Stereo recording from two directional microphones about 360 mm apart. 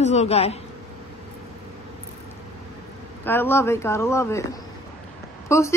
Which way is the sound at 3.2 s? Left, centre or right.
Centre.